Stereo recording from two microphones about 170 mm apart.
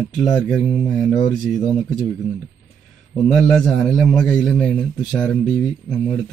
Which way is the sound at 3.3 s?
5° left (ahead or behind).